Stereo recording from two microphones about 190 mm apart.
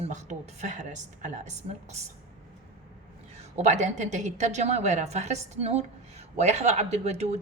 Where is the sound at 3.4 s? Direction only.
35° right (ahead or behind).